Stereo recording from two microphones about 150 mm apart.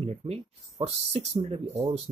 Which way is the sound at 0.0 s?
40° right (ahead or behind).